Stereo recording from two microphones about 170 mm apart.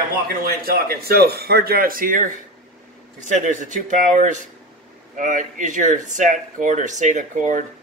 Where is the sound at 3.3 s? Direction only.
45° right (ahead or behind).